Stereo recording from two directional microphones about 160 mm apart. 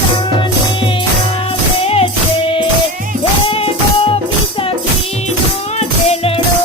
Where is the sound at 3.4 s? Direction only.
35° left (ahead or behind).